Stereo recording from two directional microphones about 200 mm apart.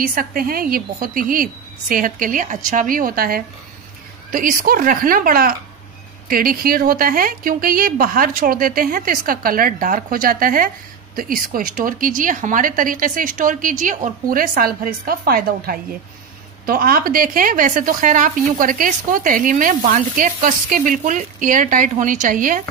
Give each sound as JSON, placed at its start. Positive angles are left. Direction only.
{"t": 0.0, "sound": "a woman's voice", "side_deg": -45}